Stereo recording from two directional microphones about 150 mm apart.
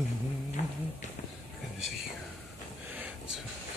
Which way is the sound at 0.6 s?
55° left (ahead or behind).